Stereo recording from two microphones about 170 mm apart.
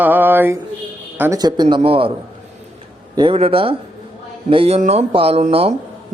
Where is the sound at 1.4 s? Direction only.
25° right (ahead or behind).